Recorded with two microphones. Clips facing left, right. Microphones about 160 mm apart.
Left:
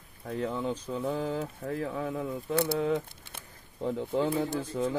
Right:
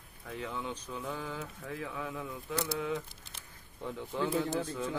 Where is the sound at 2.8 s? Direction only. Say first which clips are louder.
Left 7 dB; 50° left (ahead or behind).